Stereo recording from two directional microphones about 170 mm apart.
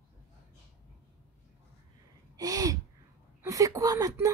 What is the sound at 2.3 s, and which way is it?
Gasp, 20° right (ahead or behind).